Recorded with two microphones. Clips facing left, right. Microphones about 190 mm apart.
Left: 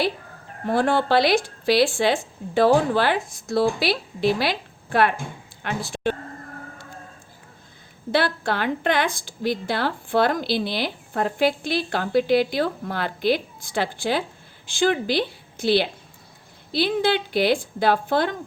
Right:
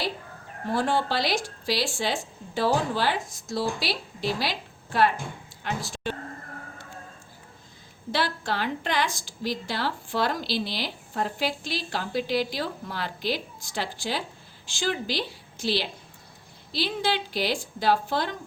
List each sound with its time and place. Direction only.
0.7 s a woman's voice: 60° left (ahead or behind)
8.1 s a woman's voice: 55° left (ahead or behind)